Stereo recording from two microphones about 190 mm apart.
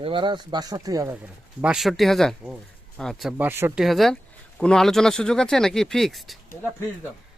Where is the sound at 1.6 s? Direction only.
5° right (ahead or behind).